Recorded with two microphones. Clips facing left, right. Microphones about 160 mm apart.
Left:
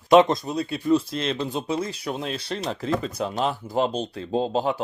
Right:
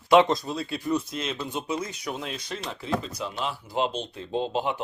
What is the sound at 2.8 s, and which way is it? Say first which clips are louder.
Speech: left 3 dB; 50° left (ahead or behind).